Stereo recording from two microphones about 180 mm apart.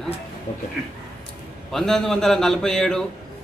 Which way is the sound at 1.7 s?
Centre (ahead or behind).